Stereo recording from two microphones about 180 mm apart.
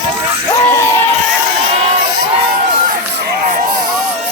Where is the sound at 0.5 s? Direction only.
15° left (ahead or behind).